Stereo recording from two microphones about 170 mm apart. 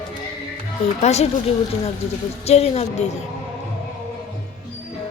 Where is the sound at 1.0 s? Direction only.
40° left (ahead or behind).